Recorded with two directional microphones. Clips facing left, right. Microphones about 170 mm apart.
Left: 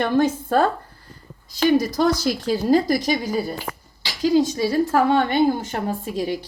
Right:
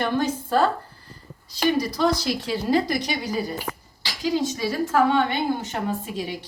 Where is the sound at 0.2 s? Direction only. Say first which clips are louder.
Left 4 dB; 55° left (ahead or behind).